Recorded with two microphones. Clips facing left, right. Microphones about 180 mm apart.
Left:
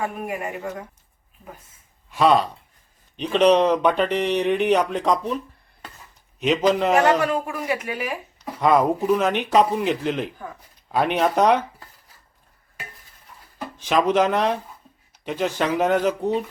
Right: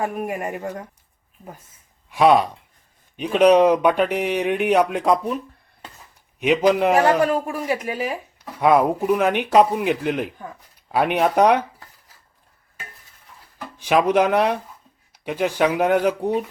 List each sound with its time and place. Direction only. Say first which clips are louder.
0.3 s speech: right 2 dB; 45° right (ahead or behind)
2.0 s speech: right 2 dB; 10° right (ahead or behind)
6.4 s speech: right 2 dB; 10° right (ahead or behind)
7.2 s speech: right 3 dB; 35° right (ahead or behind)
8.6 s speech: right 1 dB; 10° right (ahead or behind)
13.7 s speech: right 2 dB; 10° right (ahead or behind)